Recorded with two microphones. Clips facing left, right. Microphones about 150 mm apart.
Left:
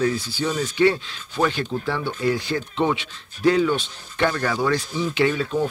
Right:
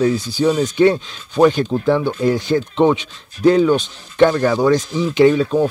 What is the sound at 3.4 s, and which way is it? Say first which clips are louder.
Speech: right 6 dB; 20° right (ahead or behind).